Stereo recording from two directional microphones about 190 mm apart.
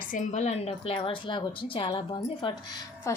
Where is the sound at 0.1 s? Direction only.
40° left (ahead or behind).